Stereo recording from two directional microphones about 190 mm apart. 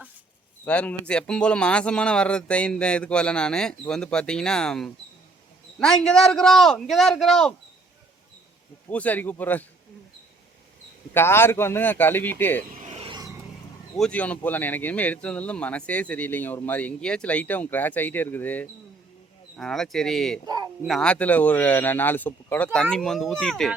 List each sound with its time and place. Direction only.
0.6 s a man's voice: 5° left (ahead or behind)
8.9 s speech: 10° left (ahead or behind)
11.1 s speech: 10° left (ahead or behind)
12.7 s vehicle: 35° right (ahead or behind)
13.9 s a man's voice: 5° left (ahead or behind)